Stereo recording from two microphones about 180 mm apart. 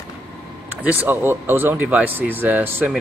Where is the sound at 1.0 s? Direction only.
10° right (ahead or behind).